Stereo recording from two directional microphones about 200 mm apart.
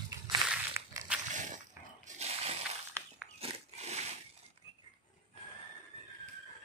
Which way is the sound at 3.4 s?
35° right (ahead or behind).